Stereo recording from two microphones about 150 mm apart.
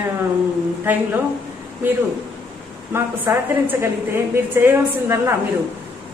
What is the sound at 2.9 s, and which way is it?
A woman's voice, 15° right (ahead or behind).